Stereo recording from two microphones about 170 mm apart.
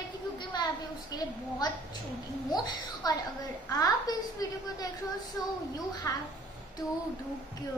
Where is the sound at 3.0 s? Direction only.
20° left (ahead or behind).